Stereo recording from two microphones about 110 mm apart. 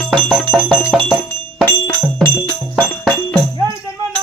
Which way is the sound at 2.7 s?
5° left (ahead or behind).